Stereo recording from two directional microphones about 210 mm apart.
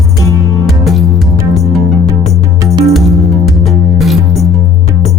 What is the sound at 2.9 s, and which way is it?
Music, centre (ahead or behind).